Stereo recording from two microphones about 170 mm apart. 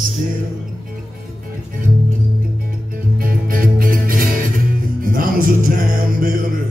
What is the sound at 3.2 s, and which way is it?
Music, 55° right (ahead or behind).